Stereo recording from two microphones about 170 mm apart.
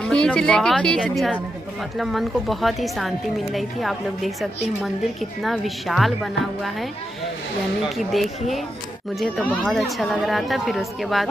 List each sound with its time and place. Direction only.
0.0 s speech: 5° left (ahead or behind)
8.0 s speech: centre (ahead or behind)